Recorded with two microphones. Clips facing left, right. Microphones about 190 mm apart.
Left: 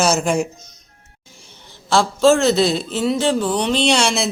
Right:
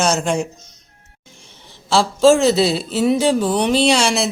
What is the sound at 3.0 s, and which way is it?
A man's voice, 15° right (ahead or behind).